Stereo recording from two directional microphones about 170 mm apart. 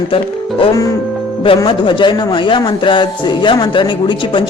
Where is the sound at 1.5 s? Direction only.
30° left (ahead or behind).